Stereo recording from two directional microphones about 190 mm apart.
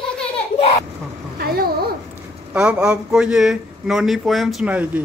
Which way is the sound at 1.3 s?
55° right (ahead or behind).